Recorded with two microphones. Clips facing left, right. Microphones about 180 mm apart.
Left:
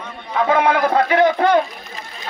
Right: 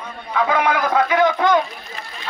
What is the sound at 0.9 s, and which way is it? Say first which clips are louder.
Speech: left 2 dB; 35° left (ahead or behind).